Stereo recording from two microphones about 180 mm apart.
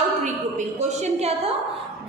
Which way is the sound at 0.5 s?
40° right (ahead or behind).